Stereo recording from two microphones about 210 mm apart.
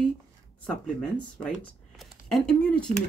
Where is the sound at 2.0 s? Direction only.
Centre (ahead or behind).